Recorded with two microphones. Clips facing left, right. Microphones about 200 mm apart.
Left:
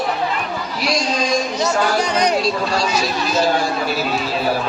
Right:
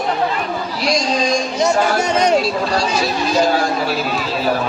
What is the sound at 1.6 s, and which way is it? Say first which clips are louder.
Speech: right 5 dB; 25° right (ahead or behind).